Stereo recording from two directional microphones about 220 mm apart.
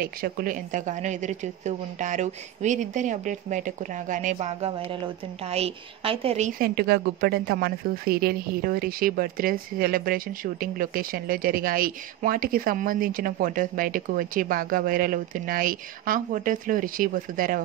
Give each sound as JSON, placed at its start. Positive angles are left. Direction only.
{"t": 0.0, "sound": "a woman's voice", "side_deg": -40}